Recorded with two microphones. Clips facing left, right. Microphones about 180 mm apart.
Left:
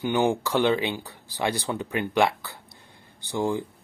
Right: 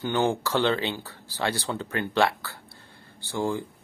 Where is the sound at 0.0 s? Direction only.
15° left (ahead or behind).